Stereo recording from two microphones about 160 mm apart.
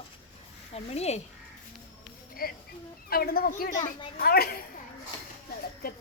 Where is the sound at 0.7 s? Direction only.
40° left (ahead or behind).